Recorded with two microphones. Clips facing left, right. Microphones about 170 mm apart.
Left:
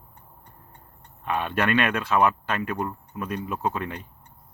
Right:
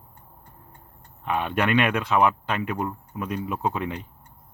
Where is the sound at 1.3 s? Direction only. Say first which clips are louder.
Right 1 dB; 15° right (ahead or behind).